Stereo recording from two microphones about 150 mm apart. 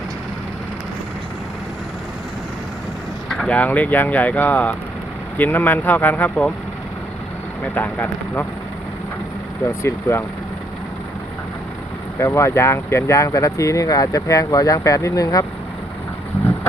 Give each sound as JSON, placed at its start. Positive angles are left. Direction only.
{"t": 3.2, "sound": "speech", "side_deg": 5}
{"t": 7.6, "sound": "speech", "side_deg": 10}
{"t": 9.6, "sound": "speech", "side_deg": 15}
{"t": 12.2, "sound": "speech", "side_deg": 20}